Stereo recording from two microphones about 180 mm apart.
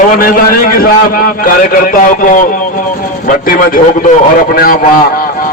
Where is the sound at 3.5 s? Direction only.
50° left (ahead or behind).